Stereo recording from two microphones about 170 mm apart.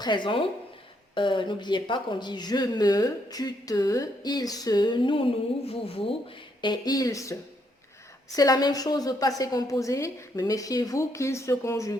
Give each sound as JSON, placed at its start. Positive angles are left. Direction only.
{"t": 0.0, "sound": "speech", "side_deg": 25}
{"t": 8.4, "sound": "speech", "side_deg": 20}